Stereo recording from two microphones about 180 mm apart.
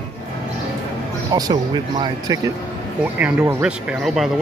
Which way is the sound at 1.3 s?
20° right (ahead or behind).